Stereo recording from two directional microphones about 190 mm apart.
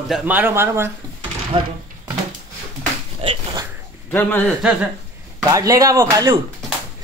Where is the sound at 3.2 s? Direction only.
30° right (ahead or behind).